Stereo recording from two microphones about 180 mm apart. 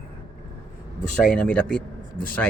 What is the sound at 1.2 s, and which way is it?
Speech, 5° left (ahead or behind).